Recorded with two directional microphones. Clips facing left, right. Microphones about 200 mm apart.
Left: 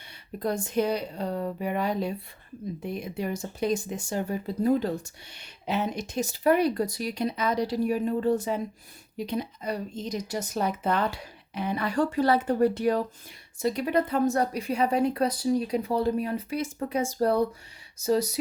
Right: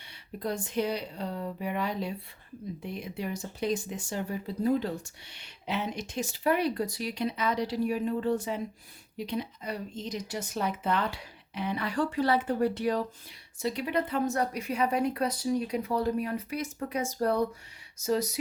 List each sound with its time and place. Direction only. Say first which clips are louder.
0.3 s speech: left 4 dB; 45° left (ahead or behind)